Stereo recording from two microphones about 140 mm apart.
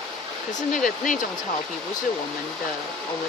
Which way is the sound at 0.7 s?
70° left (ahead or behind).